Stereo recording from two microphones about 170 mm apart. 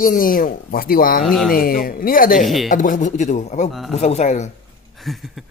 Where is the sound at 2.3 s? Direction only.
Centre (ahead or behind).